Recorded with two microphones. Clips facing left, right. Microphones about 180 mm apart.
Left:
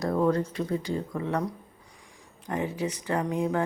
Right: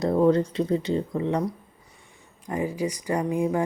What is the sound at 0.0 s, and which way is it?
Speech, 25° right (ahead or behind).